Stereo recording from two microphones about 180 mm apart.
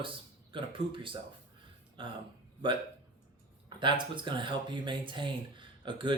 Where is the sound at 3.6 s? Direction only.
25° right (ahead or behind).